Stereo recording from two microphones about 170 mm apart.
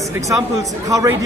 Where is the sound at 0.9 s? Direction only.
20° right (ahead or behind).